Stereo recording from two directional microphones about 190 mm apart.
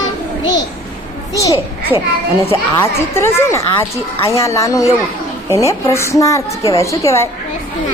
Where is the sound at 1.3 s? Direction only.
15° left (ahead or behind).